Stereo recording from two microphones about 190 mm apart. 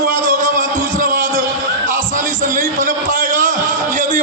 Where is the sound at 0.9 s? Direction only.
45° right (ahead or behind).